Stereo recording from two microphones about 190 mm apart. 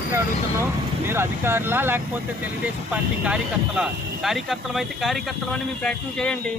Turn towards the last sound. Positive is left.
turn(degrees=5)  # may be behind; listen again after turning